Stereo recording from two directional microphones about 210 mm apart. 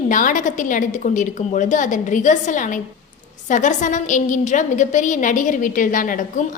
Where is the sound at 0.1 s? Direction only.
40° left (ahead or behind).